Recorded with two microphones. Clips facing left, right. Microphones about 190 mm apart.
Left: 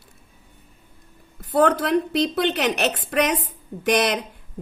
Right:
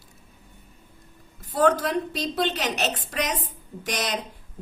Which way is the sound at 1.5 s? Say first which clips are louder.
Left 3 dB; 60° left (ahead or behind).